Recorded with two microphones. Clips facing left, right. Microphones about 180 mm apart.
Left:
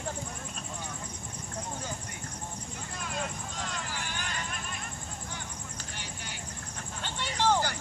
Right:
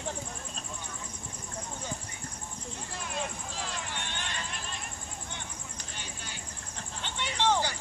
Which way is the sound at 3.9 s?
25° right (ahead or behind).